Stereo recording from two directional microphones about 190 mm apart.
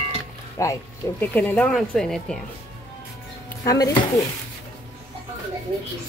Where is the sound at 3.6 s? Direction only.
15° left (ahead or behind).